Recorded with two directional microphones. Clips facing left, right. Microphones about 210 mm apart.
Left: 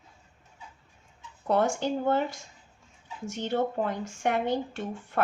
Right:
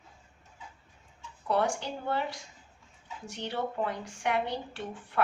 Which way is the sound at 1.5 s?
45° left (ahead or behind).